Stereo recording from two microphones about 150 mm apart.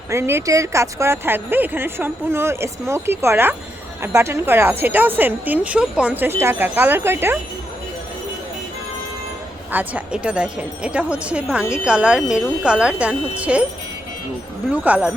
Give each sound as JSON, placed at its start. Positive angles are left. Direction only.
{"t": 0.1, "sound": "a woman's voice", "side_deg": -15}
{"t": 9.7, "sound": "a woman's voice", "side_deg": -10}
{"t": 14.7, "sound": "a woman's voice", "side_deg": -10}